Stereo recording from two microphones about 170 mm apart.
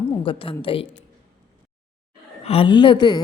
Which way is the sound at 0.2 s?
30° left (ahead or behind).